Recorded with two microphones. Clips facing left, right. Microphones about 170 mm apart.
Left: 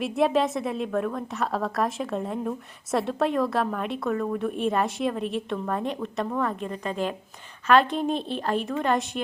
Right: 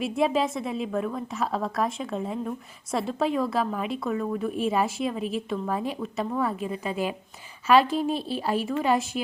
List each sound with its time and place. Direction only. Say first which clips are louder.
0.0 s a woman's voice: left 1 dB; centre (ahead or behind)